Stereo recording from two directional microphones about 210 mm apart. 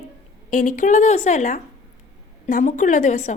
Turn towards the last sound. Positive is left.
turn(degrees=35)  # may be behind; listen again after turning